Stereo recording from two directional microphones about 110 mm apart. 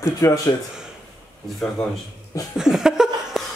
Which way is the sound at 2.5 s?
5° right (ahead or behind).